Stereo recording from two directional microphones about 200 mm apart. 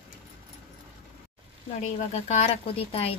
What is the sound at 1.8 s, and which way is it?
A woman's voice, 35° left (ahead or behind).